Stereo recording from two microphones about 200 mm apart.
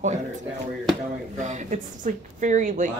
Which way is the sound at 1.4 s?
40° right (ahead or behind).